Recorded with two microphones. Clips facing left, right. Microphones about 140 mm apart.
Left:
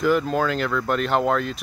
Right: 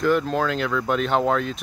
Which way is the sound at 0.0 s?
5° left (ahead or behind).